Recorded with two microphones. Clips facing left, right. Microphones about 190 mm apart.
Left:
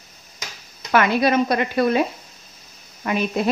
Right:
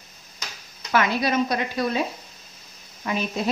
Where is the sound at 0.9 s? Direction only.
60° left (ahead or behind).